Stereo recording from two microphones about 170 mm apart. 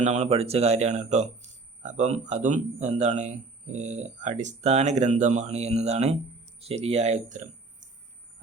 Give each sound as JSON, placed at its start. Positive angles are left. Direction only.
{"t": 0.0, "sound": "speech", "side_deg": -40}